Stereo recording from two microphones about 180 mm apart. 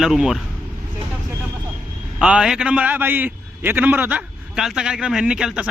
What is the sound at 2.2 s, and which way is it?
A man's voice, 5° right (ahead or behind).